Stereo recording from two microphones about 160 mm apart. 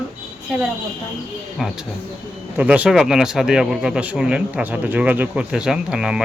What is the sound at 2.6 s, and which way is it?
Speech, 10° right (ahead or behind).